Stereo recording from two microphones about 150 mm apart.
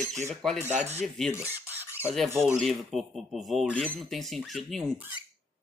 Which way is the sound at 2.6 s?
Centre (ahead or behind).